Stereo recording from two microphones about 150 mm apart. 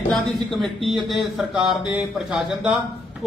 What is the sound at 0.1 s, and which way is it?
A man's voice, centre (ahead or behind).